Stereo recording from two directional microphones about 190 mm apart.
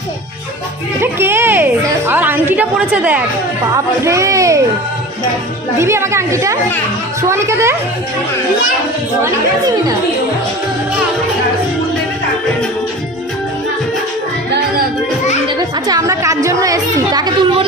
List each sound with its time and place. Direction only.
1.0 s a woman's voice: 10° right (ahead or behind)
5.8 s speech: 15° right (ahead or behind)
15.4 s a woman's voice: 20° right (ahead or behind)